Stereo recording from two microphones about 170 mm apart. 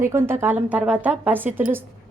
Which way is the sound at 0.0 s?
15° right (ahead or behind).